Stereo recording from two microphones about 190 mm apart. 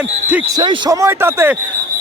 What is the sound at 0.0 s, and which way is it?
Speech, 10° right (ahead or behind).